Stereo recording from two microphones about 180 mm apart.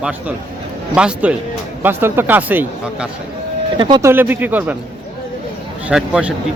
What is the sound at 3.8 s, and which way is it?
Speech, 25° right (ahead or behind).